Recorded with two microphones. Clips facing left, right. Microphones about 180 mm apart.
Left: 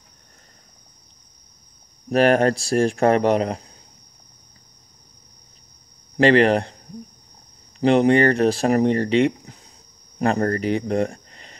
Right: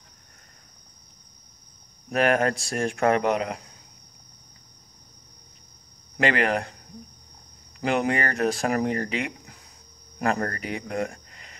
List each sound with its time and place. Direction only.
2.0 s speech: 35° left (ahead or behind)
6.1 s speech: 30° left (ahead or behind)
7.8 s speech: 30° left (ahead or behind)